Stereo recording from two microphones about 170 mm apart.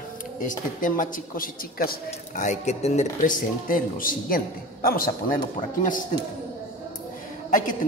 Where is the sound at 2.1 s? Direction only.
45° left (ahead or behind).